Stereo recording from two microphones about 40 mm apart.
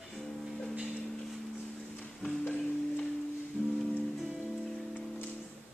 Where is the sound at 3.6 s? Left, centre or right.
Left.